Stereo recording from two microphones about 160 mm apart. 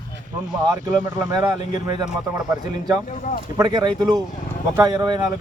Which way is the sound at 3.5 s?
25° right (ahead or behind).